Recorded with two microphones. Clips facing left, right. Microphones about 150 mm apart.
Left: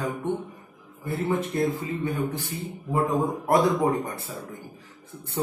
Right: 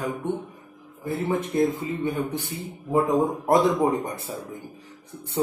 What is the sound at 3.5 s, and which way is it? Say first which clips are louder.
Speech: right 1 dB; 20° right (ahead or behind).